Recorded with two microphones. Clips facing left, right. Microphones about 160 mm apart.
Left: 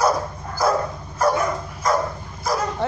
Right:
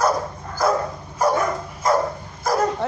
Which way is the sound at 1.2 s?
10° right (ahead or behind).